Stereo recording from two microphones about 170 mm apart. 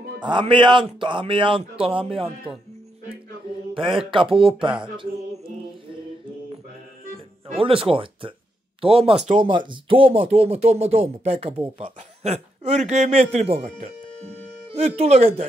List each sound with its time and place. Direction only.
0.2 s speech: 30° right (ahead or behind)
2.2 s speech: 10° right (ahead or behind)
3.7 s speech: 30° right (ahead or behind)
7.5 s speech: 30° right (ahead or behind)
15.0 s speech: 35° right (ahead or behind)